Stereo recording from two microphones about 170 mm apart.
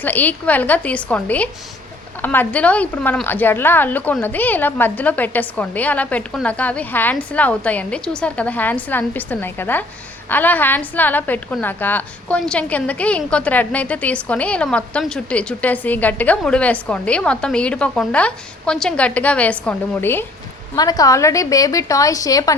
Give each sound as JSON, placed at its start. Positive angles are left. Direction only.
{"t": 0.0, "sound": "a woman's voice", "side_deg": 10}